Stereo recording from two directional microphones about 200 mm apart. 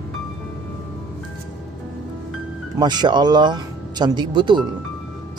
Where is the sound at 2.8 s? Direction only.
20° right (ahead or behind).